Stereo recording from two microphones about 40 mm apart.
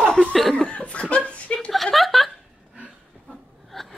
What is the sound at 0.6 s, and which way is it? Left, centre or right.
Chuckle, left.